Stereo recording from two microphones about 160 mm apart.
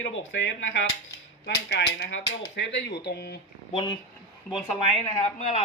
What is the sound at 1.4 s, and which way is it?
Speech, 90° left.